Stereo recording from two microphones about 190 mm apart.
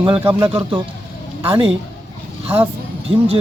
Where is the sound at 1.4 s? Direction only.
30° right (ahead or behind).